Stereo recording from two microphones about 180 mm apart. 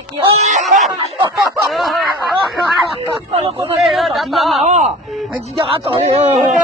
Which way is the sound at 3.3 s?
35° right (ahead or behind).